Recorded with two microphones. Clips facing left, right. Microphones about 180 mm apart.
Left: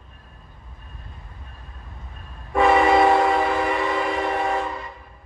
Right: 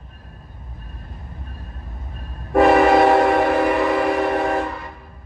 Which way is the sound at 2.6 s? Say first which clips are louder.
Right 3 dB; 60° right (ahead or behind).